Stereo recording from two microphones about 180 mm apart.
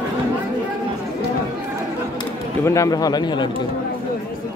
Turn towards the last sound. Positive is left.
turn(degrees=25)  # may be behind; listen again after turning